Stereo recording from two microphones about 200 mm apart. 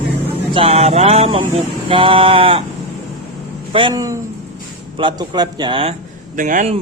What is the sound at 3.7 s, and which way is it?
Speech, 25° right (ahead or behind).